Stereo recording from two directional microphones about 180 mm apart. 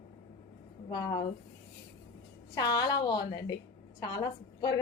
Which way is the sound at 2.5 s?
20° left (ahead or behind).